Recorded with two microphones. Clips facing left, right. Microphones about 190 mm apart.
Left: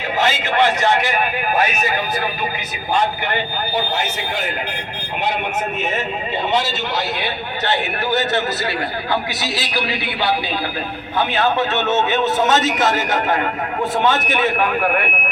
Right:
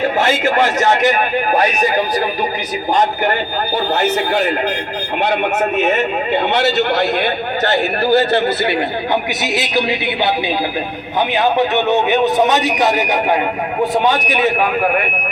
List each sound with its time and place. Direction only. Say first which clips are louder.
0.2 s a man's voice: even; 50° right (ahead or behind)
3.9 s a man's voice: right 8 dB; 60° right (ahead or behind); by 14.7 s 10° right (ahead or behind)